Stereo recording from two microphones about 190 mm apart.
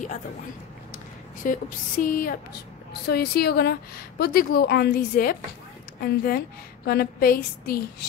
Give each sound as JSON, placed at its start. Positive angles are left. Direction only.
{"t": 1.4, "sound": "a woman's voice", "side_deg": 45}